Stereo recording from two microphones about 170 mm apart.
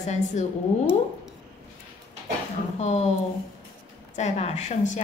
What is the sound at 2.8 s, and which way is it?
Speech, 40° left (ahead or behind).